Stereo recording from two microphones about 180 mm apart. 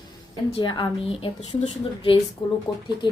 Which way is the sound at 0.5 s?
25° left (ahead or behind).